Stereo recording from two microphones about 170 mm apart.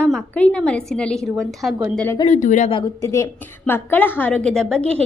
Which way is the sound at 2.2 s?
45° left (ahead or behind).